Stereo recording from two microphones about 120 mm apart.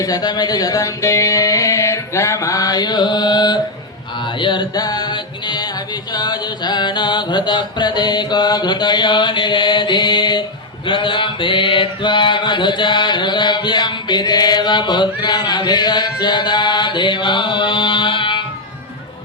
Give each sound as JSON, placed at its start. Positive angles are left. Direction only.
{"t": 0.0, "sound": "music", "side_deg": 35}
{"t": 10.8, "sound": "mantra", "side_deg": 40}